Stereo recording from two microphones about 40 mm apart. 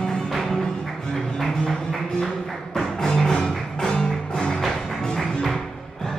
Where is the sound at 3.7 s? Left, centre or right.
Centre.